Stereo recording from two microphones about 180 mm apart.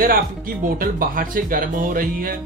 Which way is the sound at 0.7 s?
50° right (ahead or behind).